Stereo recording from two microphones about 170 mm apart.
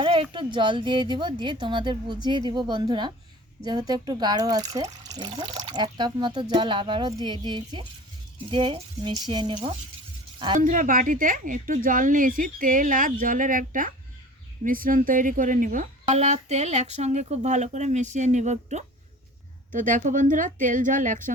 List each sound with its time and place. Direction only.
0.0 s speech: 30° right (ahead or behind)
10.6 s speech: 50° right (ahead or behind)